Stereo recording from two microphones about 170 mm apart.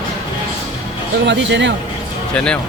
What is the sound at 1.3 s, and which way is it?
Speech, 90° right.